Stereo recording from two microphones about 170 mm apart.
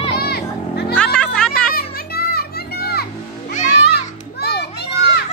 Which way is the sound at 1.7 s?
65° left (ahead or behind).